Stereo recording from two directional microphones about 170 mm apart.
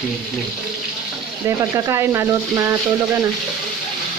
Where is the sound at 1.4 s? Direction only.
20° right (ahead or behind).